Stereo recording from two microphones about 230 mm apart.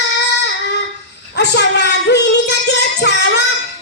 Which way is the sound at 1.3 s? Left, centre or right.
Left.